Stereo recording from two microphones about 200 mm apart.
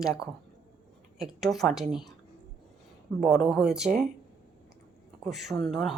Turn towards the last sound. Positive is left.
turn(degrees=0)  # may be behind; listen again after turning